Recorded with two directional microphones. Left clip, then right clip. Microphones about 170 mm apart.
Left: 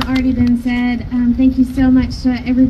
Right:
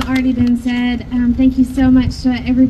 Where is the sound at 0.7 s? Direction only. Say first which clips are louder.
Even; 30° left (ahead or behind).